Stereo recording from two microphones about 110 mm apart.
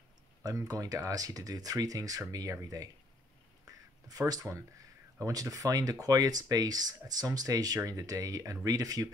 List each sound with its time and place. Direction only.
0.4 s speech: 35° right (ahead or behind)
3.6 s a sound: 35° right (ahead or behind)
5.2 s speech: 30° right (ahead or behind)